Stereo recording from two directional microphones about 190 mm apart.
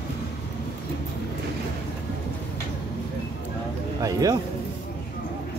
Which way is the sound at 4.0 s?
20° right (ahead or behind).